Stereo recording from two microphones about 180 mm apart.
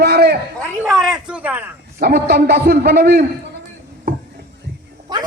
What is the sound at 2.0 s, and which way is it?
A man's voice, 60° right (ahead or behind).